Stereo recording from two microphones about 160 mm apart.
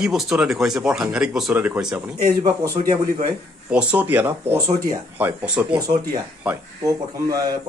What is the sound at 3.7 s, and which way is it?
Speech, 5° right (ahead or behind).